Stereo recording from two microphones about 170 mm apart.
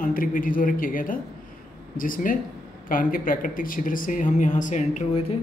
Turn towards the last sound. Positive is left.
turn(degrees=45)  # may be behind; listen again after turning